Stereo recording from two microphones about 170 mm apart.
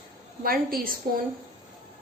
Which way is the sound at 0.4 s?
60° right (ahead or behind).